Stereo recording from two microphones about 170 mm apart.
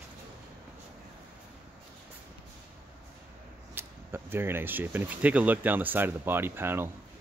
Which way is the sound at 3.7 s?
15° right (ahead or behind).